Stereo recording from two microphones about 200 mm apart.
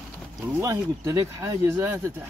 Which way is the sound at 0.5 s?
15° right (ahead or behind).